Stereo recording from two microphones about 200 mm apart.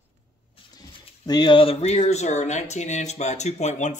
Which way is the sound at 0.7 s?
20° left (ahead or behind).